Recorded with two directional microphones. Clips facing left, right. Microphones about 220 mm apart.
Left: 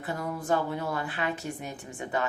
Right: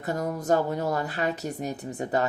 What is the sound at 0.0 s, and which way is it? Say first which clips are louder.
Speech: right 4 dB; 45° right (ahead or behind).